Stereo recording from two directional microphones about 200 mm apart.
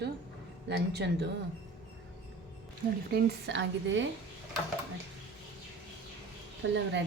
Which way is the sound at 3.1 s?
60° right (ahead or behind).